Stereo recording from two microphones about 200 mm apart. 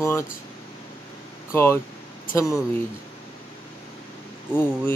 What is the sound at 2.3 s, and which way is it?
Speech, 15° left (ahead or behind).